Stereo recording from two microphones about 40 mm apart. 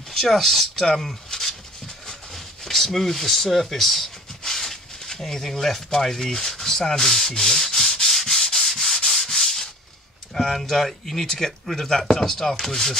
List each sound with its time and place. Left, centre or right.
0.1 s speech: centre
4.4 s a sound: centre
10.3 s speech: centre